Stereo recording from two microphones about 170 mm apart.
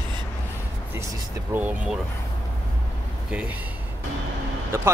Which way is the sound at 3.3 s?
5° right (ahead or behind).